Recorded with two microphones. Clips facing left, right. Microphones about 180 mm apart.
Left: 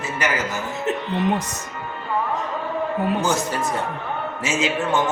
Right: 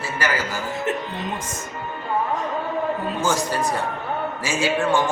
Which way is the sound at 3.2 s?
25° left (ahead or behind).